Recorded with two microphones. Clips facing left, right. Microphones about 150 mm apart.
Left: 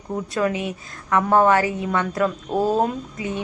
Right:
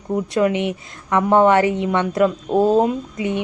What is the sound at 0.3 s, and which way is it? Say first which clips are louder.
A woman's voice: right 4 dB; 25° right (ahead or behind).